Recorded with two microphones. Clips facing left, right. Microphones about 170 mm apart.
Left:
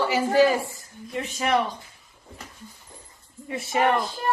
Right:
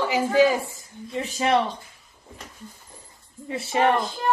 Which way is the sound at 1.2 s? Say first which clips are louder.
Right 2 dB; 35° right (ahead or behind).